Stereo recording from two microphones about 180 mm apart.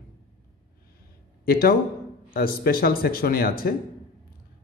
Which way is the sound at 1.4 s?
55° left (ahead or behind).